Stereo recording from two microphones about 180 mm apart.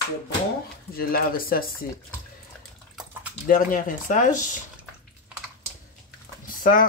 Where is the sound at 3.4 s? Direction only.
50° left (ahead or behind).